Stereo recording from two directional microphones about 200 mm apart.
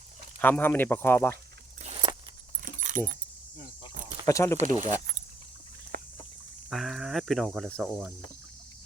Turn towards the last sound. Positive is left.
turn(degrees=5)  # may be behind; listen again after turning